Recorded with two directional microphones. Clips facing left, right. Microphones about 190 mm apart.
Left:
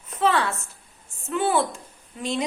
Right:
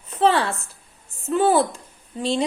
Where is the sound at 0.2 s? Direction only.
30° right (ahead or behind).